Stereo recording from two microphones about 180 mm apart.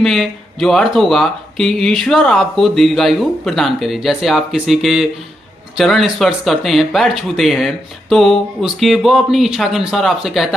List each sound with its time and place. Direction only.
0.0 s speech: centre (ahead or behind)